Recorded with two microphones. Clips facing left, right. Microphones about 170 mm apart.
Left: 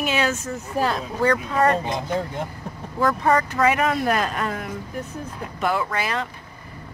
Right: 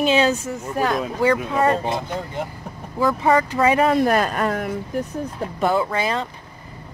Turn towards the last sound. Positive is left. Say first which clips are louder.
# right 4 dB
turn(degrees=-25)  # may be behind; listen again after turning